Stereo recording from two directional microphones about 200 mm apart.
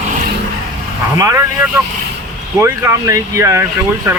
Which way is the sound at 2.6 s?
15° right (ahead or behind).